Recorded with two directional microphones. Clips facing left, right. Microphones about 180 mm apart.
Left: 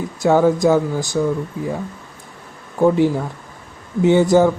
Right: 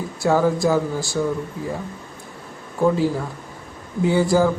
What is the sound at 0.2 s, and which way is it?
Speech, 20° left (ahead or behind).